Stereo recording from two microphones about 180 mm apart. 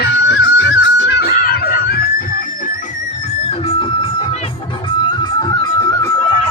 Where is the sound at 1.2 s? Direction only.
60° left (ahead or behind).